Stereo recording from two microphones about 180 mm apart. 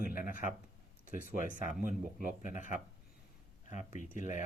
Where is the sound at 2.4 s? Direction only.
45° left (ahead or behind).